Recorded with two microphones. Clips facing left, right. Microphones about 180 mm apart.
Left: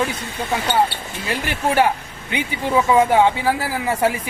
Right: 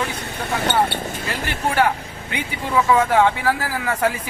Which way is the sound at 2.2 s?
20° left (ahead or behind).